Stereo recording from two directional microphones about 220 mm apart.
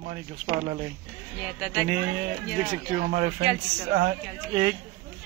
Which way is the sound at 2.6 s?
25° right (ahead or behind).